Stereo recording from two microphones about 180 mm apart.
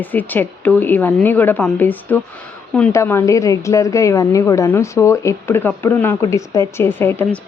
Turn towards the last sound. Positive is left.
turn(degrees=10)  # may be behind; listen again after turning